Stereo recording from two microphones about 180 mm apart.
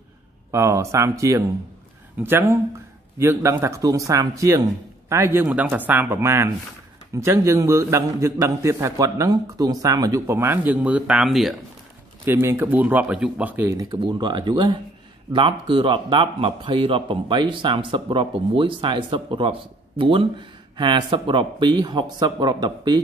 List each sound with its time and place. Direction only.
0.5 s a man's voice: 15° right (ahead or behind); by 11.5 s centre (ahead or behind)
12.3 s a man's voice: 15° right (ahead or behind)
13.9 s a man's voice: 25° right (ahead or behind)